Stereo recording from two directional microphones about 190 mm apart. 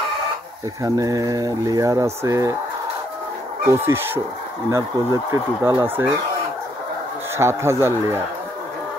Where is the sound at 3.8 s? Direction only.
10° right (ahead or behind).